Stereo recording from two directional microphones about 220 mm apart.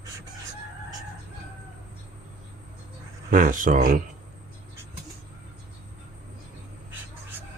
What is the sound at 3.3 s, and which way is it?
Speech, 35° right (ahead or behind).